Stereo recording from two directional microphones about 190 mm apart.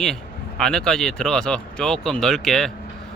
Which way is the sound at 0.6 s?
5° left (ahead or behind).